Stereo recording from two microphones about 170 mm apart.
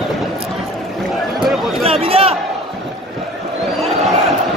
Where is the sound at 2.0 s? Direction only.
35° right (ahead or behind).